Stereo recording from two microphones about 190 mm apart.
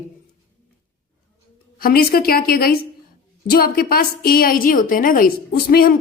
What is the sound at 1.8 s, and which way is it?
A woman's voice, 50° left (ahead or behind).